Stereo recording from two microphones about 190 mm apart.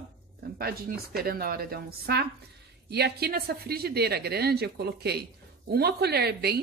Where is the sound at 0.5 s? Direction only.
55° right (ahead or behind).